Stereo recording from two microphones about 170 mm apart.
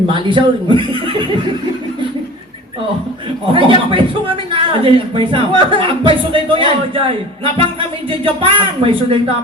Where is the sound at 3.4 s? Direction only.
30° right (ahead or behind).